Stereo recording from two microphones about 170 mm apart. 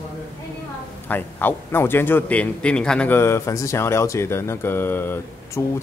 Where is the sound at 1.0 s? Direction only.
10° left (ahead or behind).